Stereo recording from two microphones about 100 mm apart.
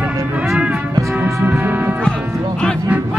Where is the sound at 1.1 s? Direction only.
15° right (ahead or behind).